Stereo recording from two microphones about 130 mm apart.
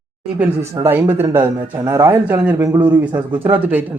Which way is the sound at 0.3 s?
15° right (ahead or behind).